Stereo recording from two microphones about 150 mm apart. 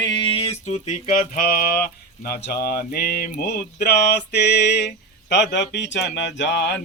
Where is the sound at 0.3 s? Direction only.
45° left (ahead or behind).